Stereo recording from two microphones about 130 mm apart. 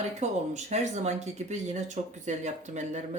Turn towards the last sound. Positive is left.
turn(degrees=-65)  # may be behind; listen again after turning